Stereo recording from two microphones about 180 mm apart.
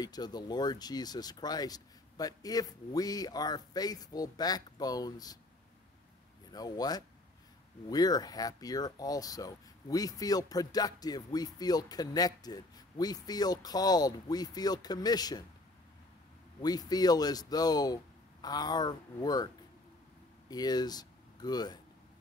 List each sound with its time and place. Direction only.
0.0 s speech: 20° left (ahead or behind)
6.5 s speech: 20° left (ahead or behind)
16.6 s speech: 20° left (ahead or behind)